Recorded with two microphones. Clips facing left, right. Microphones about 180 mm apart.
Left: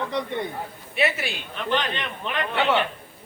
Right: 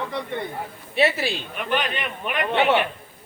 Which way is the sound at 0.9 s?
30° right (ahead or behind).